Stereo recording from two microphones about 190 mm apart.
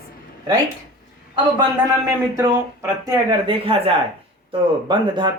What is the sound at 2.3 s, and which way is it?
Speech, 15° right (ahead or behind).